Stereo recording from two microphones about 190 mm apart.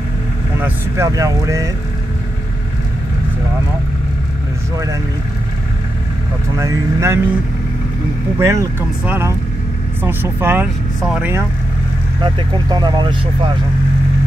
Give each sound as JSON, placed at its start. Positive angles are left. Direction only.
{"t": 0.6, "sound": "speech", "side_deg": -10}
{"t": 6.6, "sound": "speech", "side_deg": -15}
{"t": 8.4, "sound": "speech", "side_deg": -15}
{"t": 11.0, "sound": "speech", "side_deg": 0}
{"t": 12.2, "sound": "speech", "side_deg": -20}